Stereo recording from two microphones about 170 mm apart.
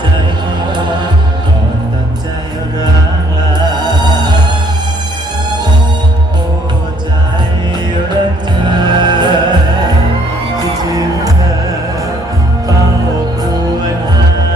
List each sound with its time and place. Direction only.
3.6 s music: 25° right (ahead or behind)
9.0 s music: 25° right (ahead or behind)